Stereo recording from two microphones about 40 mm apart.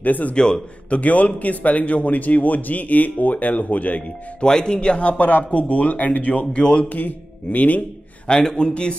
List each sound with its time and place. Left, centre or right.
0.0 s a man's voice: left
0.3 s a man's voice: left
4.4 s a man's voice: centre
6.9 s speech: left
8.3 s a man's voice: centre